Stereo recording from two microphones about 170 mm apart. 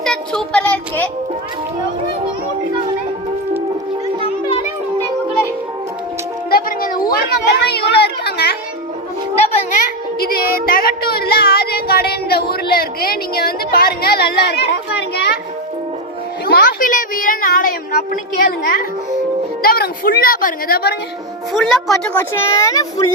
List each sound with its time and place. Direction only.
0.5 s a child's voice: 10° left (ahead or behind)
6.5 s music: 55° left (ahead or behind)
7.3 s a sound: 75° left (ahead or behind)
10.2 s child singing: 60° left (ahead or behind)
16.5 s child singing: 60° left (ahead or behind)
21.5 s a woman's voice: centre (ahead or behind)
22.2 s a child's voice: 15° left (ahead or behind)